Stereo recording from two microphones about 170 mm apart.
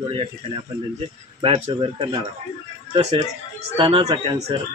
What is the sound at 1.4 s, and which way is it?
A man's voice, 30° right (ahead or behind).